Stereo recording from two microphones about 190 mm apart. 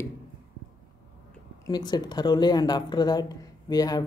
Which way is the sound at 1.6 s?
20° left (ahead or behind).